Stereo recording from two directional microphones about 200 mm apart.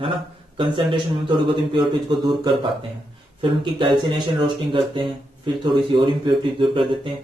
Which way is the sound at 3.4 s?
25° right (ahead or behind).